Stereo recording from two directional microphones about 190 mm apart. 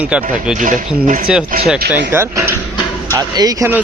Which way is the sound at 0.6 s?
45° right (ahead or behind).